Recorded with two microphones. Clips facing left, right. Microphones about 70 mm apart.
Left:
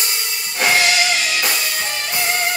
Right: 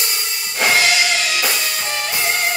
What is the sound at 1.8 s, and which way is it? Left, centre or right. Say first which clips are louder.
Music: right 1 dB; centre.